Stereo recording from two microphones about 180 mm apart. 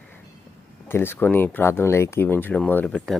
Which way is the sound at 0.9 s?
10° left (ahead or behind).